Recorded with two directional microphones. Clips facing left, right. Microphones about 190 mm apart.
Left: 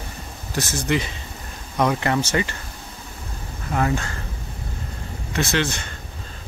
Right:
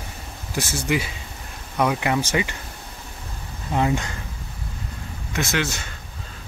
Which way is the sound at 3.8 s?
15° right (ahead or behind).